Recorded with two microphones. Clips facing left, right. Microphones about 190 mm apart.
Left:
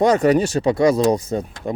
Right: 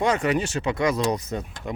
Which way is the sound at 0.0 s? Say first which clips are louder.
Left 7 dB; 40° left (ahead or behind).